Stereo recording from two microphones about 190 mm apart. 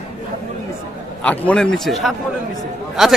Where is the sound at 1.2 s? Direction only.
5° left (ahead or behind).